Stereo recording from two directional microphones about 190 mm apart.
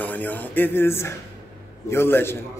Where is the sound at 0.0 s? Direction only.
10° left (ahead or behind).